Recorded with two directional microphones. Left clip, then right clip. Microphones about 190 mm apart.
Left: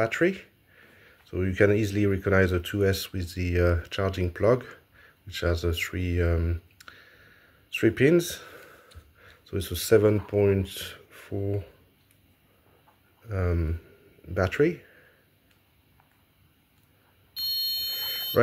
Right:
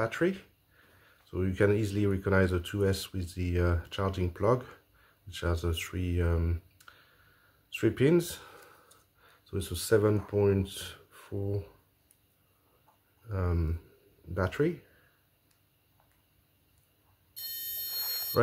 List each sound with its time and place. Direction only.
0.0 s speech: 10° left (ahead or behind)
13.3 s speech: 10° left (ahead or behind)
17.6 s alarm: 25° left (ahead or behind)
17.9 s alarm: 10° left (ahead or behind)